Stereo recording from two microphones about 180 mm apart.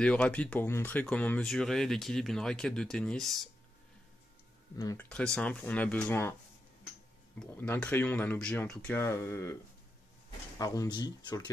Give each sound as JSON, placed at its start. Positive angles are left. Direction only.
{"t": 0.0, "sound": "speech", "side_deg": 5}
{"t": 4.9, "sound": "speech", "side_deg": 5}
{"t": 7.3, "sound": "speech", "side_deg": 10}
{"t": 10.6, "sound": "speech", "side_deg": 20}